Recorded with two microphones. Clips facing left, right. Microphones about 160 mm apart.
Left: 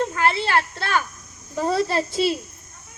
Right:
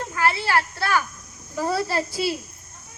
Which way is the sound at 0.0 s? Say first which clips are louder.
Left 2 dB; 20° left (ahead or behind).